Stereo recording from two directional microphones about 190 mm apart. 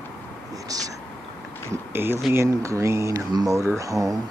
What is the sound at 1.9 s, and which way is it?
Speech, 10° right (ahead or behind).